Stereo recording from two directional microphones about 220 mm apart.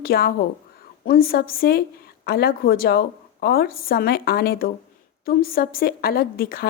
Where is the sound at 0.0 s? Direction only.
45° left (ahead or behind).